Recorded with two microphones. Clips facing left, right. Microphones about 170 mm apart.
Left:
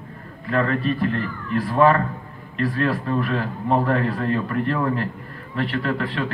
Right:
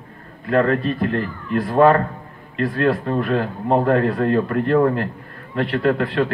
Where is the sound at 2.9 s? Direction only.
35° right (ahead or behind).